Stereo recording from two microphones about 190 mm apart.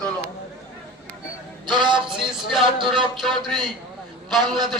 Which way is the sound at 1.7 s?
25° right (ahead or behind).